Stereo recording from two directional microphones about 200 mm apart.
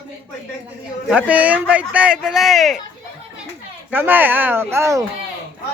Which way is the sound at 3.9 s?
10° right (ahead or behind).